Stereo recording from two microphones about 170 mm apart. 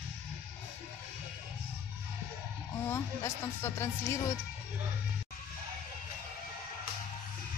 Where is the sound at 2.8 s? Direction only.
15° left (ahead or behind).